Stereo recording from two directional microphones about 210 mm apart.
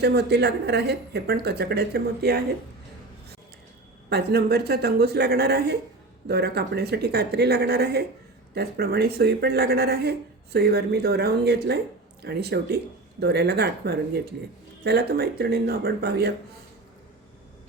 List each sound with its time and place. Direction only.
0.0 s speech: 50° right (ahead or behind)
4.1 s speech: 50° right (ahead or behind)